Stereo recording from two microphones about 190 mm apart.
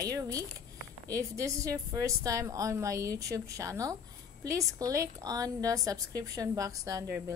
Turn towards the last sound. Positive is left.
turn(degrees=-15)  # may be behind; listen again after turning